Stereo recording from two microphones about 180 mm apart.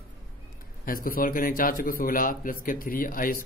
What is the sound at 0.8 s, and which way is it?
Speech, 55° left (ahead or behind).